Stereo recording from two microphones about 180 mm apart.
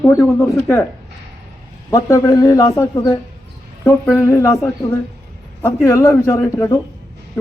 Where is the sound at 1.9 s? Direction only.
20° left (ahead or behind).